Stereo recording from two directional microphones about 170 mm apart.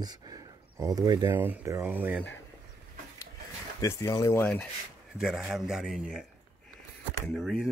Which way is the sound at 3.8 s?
15° left (ahead or behind).